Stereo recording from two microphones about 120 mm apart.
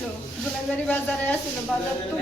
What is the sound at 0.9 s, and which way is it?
Speech, 15° left (ahead or behind).